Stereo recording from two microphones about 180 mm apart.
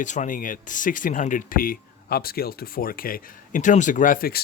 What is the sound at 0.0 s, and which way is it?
Speech, 45° left (ahead or behind).